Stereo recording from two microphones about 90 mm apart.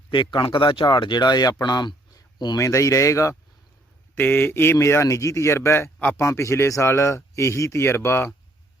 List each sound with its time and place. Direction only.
0.1 s speech: 65° left (ahead or behind)
2.6 s speech: 35° left (ahead or behind)
4.1 s a man's voice: 25° left (ahead or behind)
6.0 s speech: 20° left (ahead or behind)
6.2 s a man's voice: 30° left (ahead or behind)